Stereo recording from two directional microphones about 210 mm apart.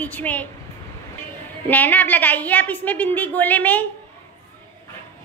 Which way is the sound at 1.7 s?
10° left (ahead or behind).